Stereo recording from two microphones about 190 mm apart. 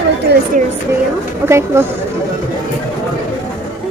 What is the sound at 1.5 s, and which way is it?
Speech, 15° right (ahead or behind).